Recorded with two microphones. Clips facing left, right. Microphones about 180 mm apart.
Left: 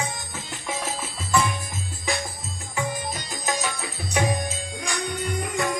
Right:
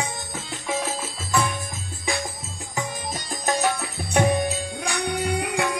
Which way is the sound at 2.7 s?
50° right (ahead or behind).